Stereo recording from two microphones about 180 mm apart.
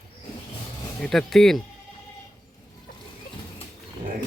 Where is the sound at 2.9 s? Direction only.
55° left (ahead or behind).